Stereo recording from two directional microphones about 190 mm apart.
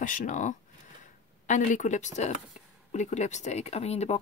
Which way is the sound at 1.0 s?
40° left (ahead or behind).